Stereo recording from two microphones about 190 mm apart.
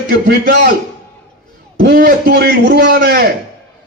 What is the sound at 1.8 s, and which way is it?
A man's voice, 55° right (ahead or behind).